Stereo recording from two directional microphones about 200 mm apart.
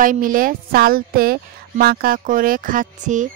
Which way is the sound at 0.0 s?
40° right (ahead or behind).